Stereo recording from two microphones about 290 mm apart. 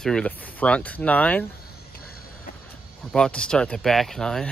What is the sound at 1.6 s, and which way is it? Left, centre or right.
Vehicle, left.